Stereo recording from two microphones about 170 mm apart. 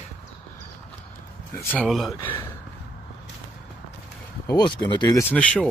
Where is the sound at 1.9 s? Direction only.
Centre (ahead or behind).